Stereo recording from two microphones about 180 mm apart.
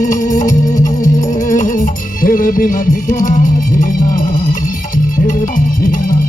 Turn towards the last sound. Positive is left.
turn(degrees=50)  # may be behind; listen again after turning